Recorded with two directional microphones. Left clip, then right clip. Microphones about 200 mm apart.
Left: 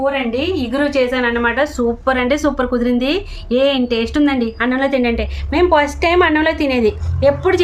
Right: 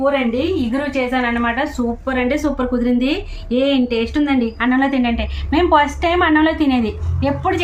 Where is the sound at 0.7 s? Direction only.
40° left (ahead or behind).